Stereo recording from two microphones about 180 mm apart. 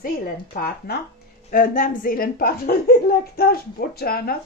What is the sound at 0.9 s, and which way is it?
Speech, 55° left (ahead or behind).